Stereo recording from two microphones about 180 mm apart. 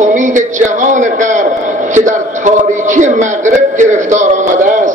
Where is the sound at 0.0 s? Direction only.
45° right (ahead or behind).